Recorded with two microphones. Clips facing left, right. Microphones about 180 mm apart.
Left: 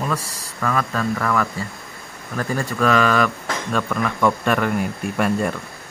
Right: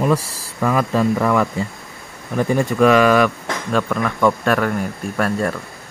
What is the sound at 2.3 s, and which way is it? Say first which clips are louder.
Speech: right 6 dB; 20° right (ahead or behind).